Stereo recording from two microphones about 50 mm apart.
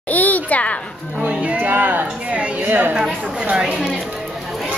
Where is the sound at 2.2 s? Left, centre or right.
Right.